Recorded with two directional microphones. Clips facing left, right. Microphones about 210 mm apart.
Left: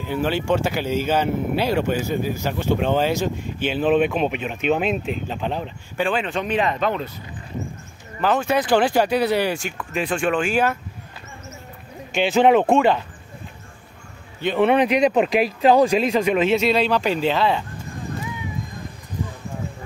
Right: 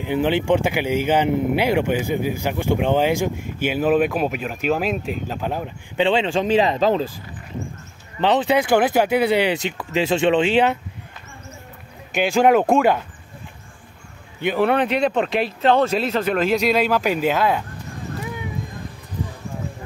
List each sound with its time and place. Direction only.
0.0 s speech: 15° right (ahead or behind)
5.9 s speech: 25° right (ahead or behind)
8.2 s speech: 20° right (ahead or behind)
12.1 s a man's voice: 5° right (ahead or behind)
14.6 s a man's voice: 5° left (ahead or behind)
16.8 s speech: 5° right (ahead or behind)